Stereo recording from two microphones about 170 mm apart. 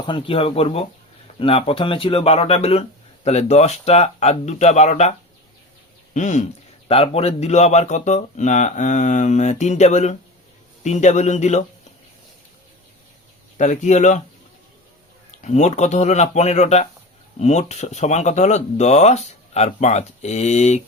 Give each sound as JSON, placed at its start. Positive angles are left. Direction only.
{"t": 0.0, "sound": "speech", "side_deg": 30}
{"t": 6.1, "sound": "speech", "side_deg": 45}
{"t": 13.6, "sound": "speech", "side_deg": 45}
{"t": 15.3, "sound": "speech", "side_deg": 45}